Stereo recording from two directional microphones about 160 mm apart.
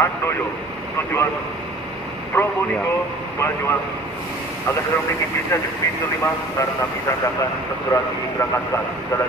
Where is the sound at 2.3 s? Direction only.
15° left (ahead or behind).